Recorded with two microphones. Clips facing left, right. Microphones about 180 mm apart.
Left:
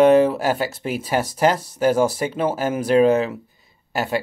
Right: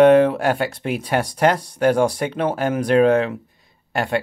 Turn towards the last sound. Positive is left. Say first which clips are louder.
# right 1 dB
turn(degrees=0)  # may be behind; listen again after turning